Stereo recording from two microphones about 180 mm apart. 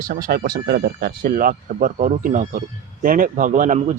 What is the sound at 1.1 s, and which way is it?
Speech, 50° right (ahead or behind).